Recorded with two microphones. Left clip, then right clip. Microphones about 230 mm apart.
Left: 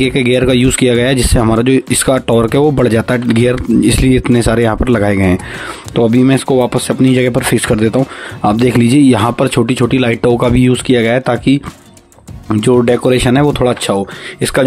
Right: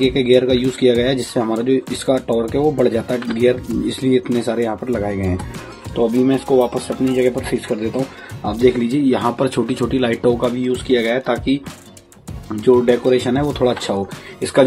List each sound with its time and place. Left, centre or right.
0.0 s speech: left